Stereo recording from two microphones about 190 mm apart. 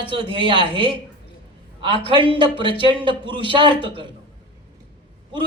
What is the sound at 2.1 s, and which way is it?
A woman's voice, 25° right (ahead or behind).